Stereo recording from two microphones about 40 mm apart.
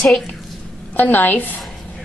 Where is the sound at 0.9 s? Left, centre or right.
Left.